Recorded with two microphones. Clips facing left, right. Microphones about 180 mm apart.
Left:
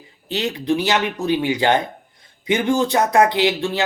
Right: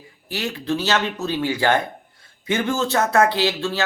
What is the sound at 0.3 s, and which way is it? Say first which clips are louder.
Speech: left 4 dB; 20° left (ahead or behind).